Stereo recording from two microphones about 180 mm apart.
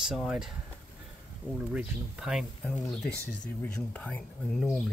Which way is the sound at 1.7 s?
5° right (ahead or behind).